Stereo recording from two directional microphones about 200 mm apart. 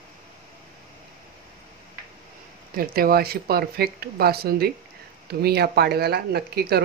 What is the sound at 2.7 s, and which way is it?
Speech, 50° right (ahead or behind).